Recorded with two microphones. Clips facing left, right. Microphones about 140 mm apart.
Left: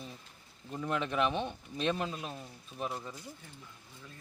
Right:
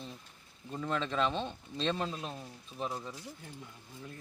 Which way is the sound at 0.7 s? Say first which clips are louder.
Even; 10° left (ahead or behind).